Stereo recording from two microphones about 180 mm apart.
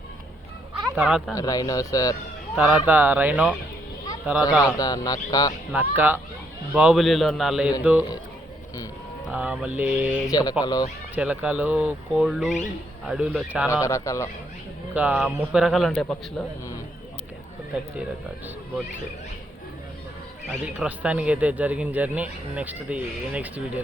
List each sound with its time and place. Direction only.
0.7 s a sound: 5° right (ahead or behind)
1.4 s speech: 20° left (ahead or behind)
2.6 s speech: 5° right (ahead or behind)
4.6 s speech: 20° left (ahead or behind)
5.9 s speech: 10° right (ahead or behind)
9.3 s speech: 5° right (ahead or behind)
10.2 s speech: 20° left (ahead or behind)
11.1 s speech: 10° right (ahead or behind)
13.8 s a man's voice: 15° left (ahead or behind)
14.9 s speech: 10° right (ahead or behind)
20.5 s speech: 5° right (ahead or behind)